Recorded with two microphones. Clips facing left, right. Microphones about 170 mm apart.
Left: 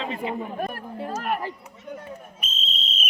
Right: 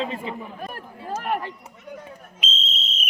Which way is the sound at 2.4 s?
90° right.